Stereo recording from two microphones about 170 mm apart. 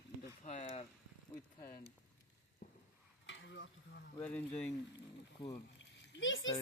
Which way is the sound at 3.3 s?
90° left.